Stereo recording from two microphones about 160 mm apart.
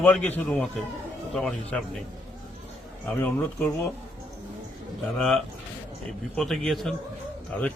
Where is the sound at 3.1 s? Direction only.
10° left (ahead or behind).